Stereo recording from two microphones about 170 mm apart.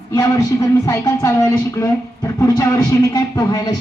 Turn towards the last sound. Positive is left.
turn(degrees=25)  # may be behind; listen again after turning